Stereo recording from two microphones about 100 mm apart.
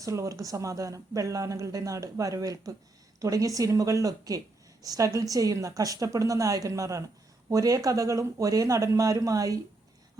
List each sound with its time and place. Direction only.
0.0 s speech: 30° right (ahead or behind)